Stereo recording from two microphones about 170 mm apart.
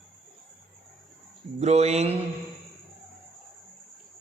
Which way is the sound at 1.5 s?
40° right (ahead or behind).